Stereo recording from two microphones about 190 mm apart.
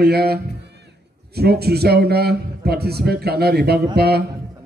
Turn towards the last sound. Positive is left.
turn(degrees=-55)  # may be behind; listen again after turning